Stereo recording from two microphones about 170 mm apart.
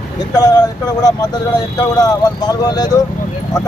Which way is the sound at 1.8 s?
20° left (ahead or behind).